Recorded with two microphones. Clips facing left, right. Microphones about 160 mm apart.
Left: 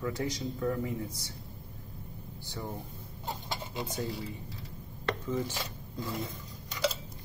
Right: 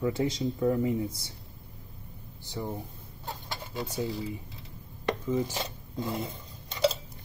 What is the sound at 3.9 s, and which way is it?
Speech, 10° right (ahead or behind).